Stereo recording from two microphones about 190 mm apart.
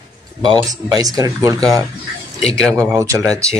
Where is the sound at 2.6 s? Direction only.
5° left (ahead or behind).